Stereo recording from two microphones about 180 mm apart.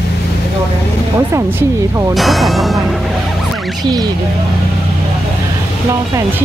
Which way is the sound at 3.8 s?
20° right (ahead or behind).